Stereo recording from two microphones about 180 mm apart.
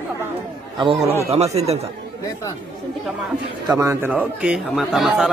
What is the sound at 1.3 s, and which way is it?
Speech, 35° right (ahead or behind).